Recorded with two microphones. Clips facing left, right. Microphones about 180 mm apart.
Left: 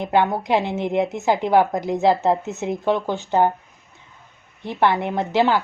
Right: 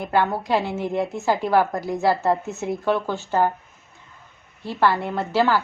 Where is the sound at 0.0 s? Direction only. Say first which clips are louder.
Left 2 dB; 20° left (ahead or behind).